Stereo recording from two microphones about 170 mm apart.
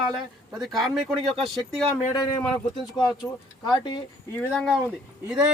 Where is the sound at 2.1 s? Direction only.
25° left (ahead or behind).